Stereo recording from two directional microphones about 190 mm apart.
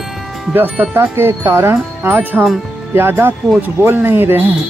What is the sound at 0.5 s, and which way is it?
Speech, 10° right (ahead or behind).